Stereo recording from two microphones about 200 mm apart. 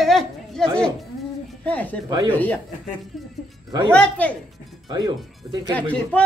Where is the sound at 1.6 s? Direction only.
5° left (ahead or behind).